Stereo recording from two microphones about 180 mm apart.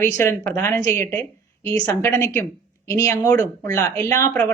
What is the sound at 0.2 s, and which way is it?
A woman's voice, 15° left (ahead or behind).